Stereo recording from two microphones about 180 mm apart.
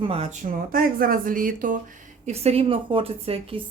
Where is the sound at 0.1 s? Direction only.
35° right (ahead or behind).